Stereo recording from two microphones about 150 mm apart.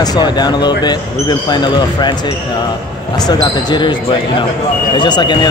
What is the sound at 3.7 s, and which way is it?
Speech, 30° left (ahead or behind).